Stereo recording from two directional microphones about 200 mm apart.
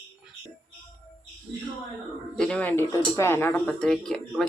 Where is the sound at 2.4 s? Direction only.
5° left (ahead or behind).